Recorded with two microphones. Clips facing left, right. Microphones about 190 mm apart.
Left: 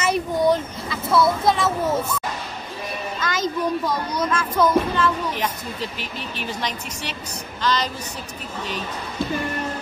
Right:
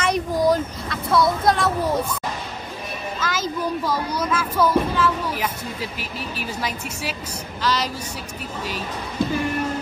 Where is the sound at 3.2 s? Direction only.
5° right (ahead or behind).